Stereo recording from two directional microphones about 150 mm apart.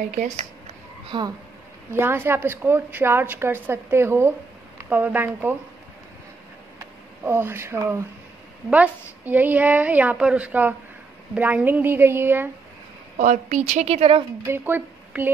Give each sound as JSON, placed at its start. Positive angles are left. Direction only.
{"t": 0.1, "sound": "a woman's voice", "side_deg": -55}
{"t": 1.0, "sound": "speech", "side_deg": -30}
{"t": 1.9, "sound": "a woman's voice", "side_deg": -15}
{"t": 6.8, "sound": "a woman's voice", "side_deg": -15}
{"t": 13.2, "sound": "a woman's voice", "side_deg": -55}
{"t": 14.4, "sound": "speech", "side_deg": -15}